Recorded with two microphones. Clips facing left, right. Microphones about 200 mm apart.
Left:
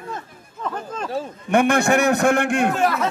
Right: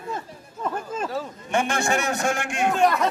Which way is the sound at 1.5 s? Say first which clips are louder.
Left 7 dB; 60° left (ahead or behind).